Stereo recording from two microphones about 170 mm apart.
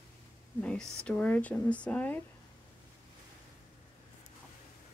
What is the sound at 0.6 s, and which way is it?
Speech, 5° left (ahead or behind).